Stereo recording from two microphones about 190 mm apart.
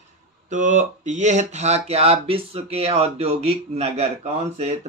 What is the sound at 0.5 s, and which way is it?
Speech, 40° right (ahead or behind).